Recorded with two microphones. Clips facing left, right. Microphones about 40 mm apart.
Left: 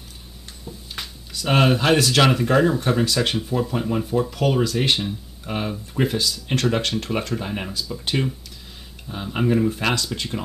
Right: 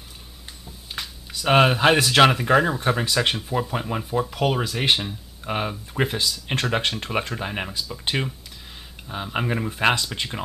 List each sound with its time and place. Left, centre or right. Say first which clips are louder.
1.3 s speech: right 1 dB; centre